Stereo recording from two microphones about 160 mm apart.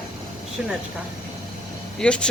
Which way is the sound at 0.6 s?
5° right (ahead or behind).